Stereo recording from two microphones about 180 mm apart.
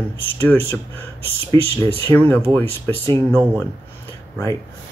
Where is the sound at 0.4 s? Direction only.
15° left (ahead or behind).